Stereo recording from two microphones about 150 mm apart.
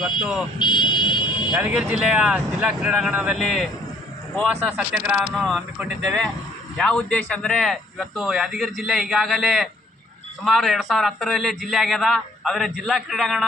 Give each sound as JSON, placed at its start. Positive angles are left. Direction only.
{"t": 0.0, "sound": "a man's voice", "side_deg": -5}
{"t": 0.6, "sound": "a sound", "side_deg": 30}
{"t": 1.5, "sound": "speech", "side_deg": -10}
{"t": 4.8, "sound": "speech", "side_deg": -10}
{"t": 5.3, "sound": "a man's voice", "side_deg": 0}